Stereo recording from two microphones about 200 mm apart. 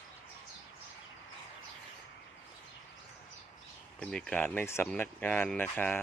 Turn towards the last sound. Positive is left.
turn(degrees=10)  # may be behind; listen again after turning